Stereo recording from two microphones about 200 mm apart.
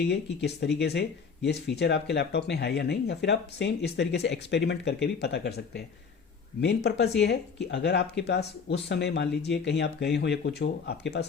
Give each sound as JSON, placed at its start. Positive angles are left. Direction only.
{"t": 0.0, "sound": "speech", "side_deg": 55}